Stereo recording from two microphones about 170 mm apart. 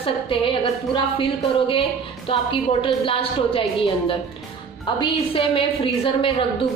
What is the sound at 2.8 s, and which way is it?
A woman's voice, 30° left (ahead or behind).